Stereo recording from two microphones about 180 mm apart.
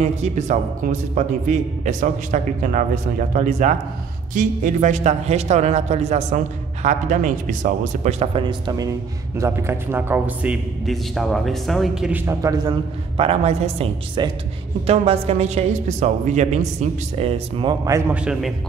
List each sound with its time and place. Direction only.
0.0 s a man's voice: 40° right (ahead or behind); by 12.2 s 5° right (ahead or behind)
12.3 s a man's voice: 20° right (ahead or behind)
13.2 s a man's voice: 35° right (ahead or behind)
18.1 s a man's voice: 5° right (ahead or behind)